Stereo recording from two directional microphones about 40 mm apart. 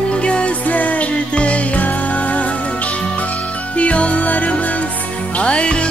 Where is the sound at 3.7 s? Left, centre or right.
Left.